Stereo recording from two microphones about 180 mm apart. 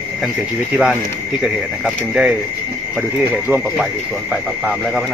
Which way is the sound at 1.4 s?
5° right (ahead or behind).